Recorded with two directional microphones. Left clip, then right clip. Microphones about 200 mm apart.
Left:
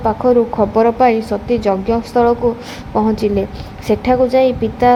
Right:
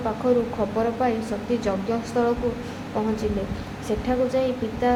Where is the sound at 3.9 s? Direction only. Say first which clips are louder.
Left 11 dB; 40° left (ahead or behind).